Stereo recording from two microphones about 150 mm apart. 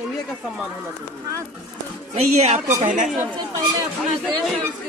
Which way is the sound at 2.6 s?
55° right (ahead or behind).